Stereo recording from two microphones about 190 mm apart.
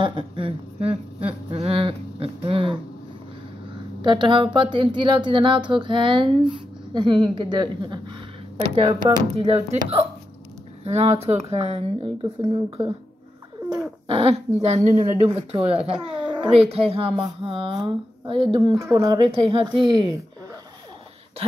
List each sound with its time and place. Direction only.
0.0 s a sound: 25° right (ahead or behind)
4.0 s a woman's voice: 25° right (ahead or behind)
10.8 s speech: 35° right (ahead or behind)
14.0 s a woman's voice: 30° right (ahead or behind)